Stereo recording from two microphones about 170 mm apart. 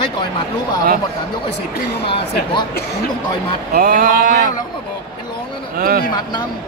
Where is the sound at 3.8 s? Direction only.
60° right (ahead or behind).